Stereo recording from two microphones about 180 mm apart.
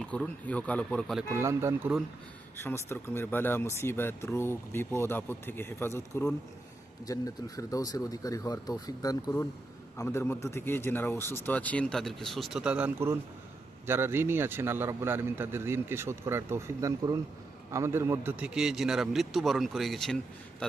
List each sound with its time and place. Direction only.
0.0 s speech: 5° left (ahead or behind)
1.3 s a man's voice: 15° right (ahead or behind)
2.6 s a man's voice: 10° left (ahead or behind)